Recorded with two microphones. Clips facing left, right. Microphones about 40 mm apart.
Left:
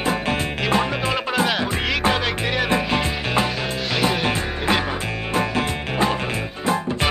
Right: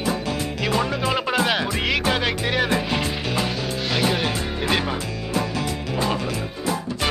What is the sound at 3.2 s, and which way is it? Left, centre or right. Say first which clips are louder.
Sizzle: left 3 dB; left.